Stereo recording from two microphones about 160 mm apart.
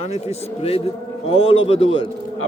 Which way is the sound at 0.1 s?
40° left (ahead or behind).